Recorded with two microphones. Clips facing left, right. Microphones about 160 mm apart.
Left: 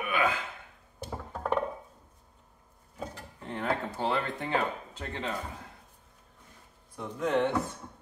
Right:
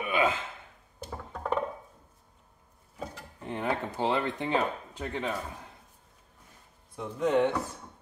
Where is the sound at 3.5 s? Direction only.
20° right (ahead or behind).